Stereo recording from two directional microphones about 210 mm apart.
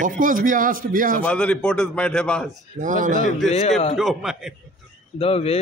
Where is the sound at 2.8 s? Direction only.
35° right (ahead or behind).